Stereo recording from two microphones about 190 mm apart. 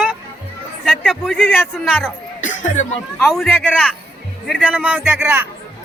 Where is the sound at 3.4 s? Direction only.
10° left (ahead or behind).